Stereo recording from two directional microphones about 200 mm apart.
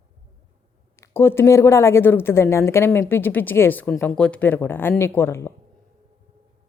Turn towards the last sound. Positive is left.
turn(degrees=10)  # may be behind; listen again after turning